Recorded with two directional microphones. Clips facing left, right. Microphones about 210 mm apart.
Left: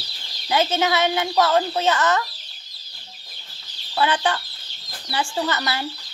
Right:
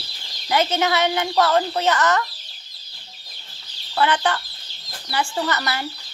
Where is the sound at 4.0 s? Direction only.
15° left (ahead or behind).